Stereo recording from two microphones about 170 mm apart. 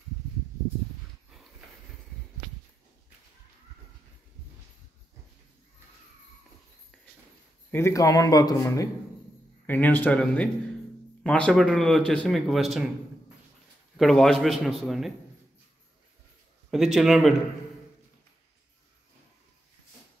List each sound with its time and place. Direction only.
7.7 s speech: 15° left (ahead or behind)
9.7 s speech: 10° left (ahead or behind)
13.9 s speech: centre (ahead or behind)
16.7 s speech: centre (ahead or behind)